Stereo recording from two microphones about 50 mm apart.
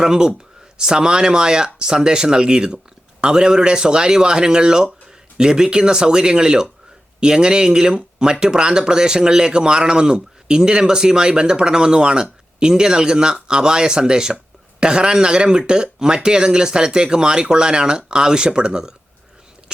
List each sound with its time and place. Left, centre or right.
0.0 s speech: centre